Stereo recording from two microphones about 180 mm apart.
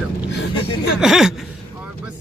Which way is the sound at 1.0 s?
Centre (ahead or behind).